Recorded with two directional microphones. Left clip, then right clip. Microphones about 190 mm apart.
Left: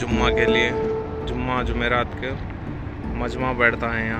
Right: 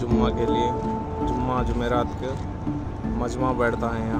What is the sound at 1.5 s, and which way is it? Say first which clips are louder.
Speech: left 7 dB; 10° left (ahead or behind).